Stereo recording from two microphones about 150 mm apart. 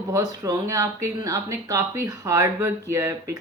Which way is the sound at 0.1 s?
25° right (ahead or behind).